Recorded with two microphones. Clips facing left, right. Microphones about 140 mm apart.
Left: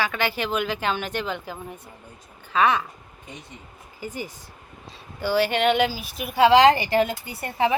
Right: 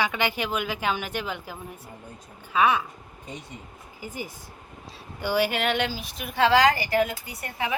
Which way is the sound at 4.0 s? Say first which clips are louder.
Left 3 dB; 10° right (ahead or behind).